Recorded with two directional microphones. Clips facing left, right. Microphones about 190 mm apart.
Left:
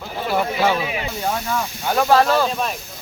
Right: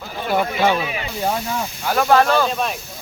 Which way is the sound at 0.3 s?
5° left (ahead or behind).